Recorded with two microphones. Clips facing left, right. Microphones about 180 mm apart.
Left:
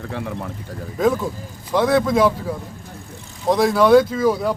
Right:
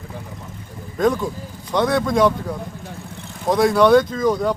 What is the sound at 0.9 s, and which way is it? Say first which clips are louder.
Speech: even; 5° left (ahead or behind).